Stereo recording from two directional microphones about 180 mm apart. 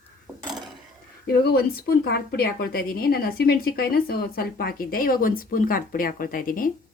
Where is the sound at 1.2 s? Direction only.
60° left (ahead or behind).